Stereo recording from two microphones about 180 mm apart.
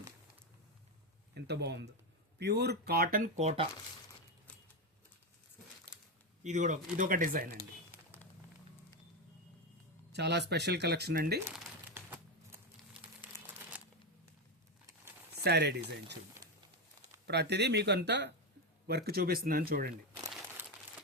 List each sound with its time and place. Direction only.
1.3 s speech: 65° right (ahead or behind); by 3.7 s 35° right (ahead or behind)
6.4 s speech: 40° right (ahead or behind)
10.1 s speech: 70° right (ahead or behind)
11.5 s crumpling: 5° right (ahead or behind)
15.4 s speech: 65° right (ahead or behind)
17.2 s speech: 70° right (ahead or behind)
18.9 s speech: 60° right (ahead or behind)
20.6 s crumpling: 10° right (ahead or behind)